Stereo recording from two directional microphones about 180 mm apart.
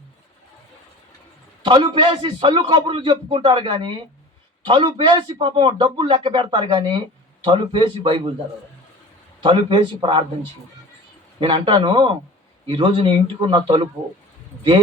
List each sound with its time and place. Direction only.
1.6 s a man's voice: 25° right (ahead or behind)
9.4 s a man's voice: 30° right (ahead or behind)
11.3 s a man's voice: 30° right (ahead or behind)